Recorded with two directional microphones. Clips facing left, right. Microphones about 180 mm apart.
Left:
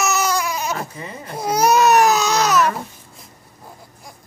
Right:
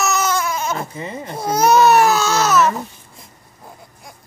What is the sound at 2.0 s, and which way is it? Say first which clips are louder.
Babbling: even; 15° left (ahead or behind).